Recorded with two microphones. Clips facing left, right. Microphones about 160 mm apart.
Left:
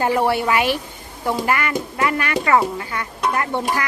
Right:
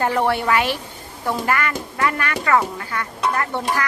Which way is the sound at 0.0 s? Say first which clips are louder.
Left 1 dB; 10° left (ahead or behind).